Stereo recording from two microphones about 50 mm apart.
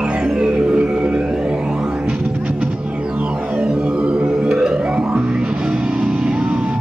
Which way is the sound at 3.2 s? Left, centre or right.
Right.